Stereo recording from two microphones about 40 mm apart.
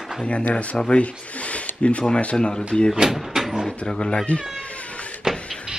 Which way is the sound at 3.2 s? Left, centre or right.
Centre.